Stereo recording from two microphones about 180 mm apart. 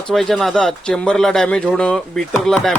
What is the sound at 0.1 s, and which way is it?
Speech, centre (ahead or behind).